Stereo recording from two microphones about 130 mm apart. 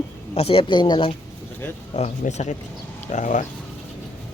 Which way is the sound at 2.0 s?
70° left (ahead or behind).